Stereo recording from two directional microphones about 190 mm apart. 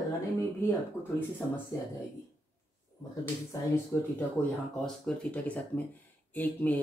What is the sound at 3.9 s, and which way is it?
Speech, 5° left (ahead or behind).